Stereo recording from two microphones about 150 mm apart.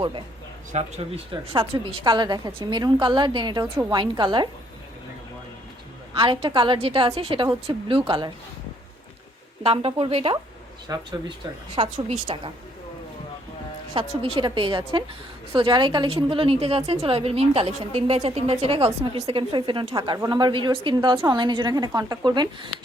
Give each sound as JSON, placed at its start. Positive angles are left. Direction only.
{"t": 0.7, "sound": "a woman's voice", "side_deg": -45}
{"t": 6.1, "sound": "a woman's voice", "side_deg": -35}
{"t": 9.6, "sound": "a woman's voice", "side_deg": -40}
{"t": 14.2, "sound": "a woman's voice", "side_deg": -35}